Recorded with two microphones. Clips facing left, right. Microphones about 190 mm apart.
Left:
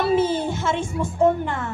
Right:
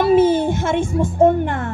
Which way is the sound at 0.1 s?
55° right (ahead or behind).